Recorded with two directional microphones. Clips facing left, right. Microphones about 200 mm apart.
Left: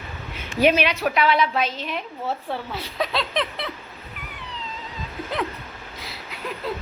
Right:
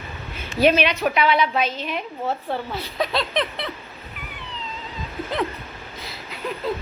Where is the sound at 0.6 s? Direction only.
10° left (ahead or behind).